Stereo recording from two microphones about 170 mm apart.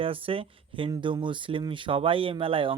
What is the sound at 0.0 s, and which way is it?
Speech, 30° right (ahead or behind).